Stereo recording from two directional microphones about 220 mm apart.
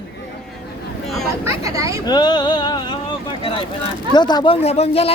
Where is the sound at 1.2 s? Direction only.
15° right (ahead or behind).